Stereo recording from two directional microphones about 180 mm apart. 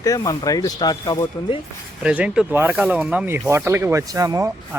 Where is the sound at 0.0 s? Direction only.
20° left (ahead or behind).